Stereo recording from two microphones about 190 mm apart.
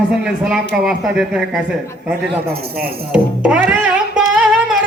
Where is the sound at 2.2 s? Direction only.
55° right (ahead or behind).